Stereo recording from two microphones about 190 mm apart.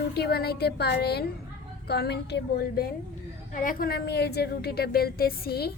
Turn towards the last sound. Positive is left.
turn(degrees=55)  # may be behind; listen again after turning